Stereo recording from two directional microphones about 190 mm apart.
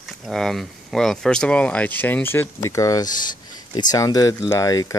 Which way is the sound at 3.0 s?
45° left (ahead or behind).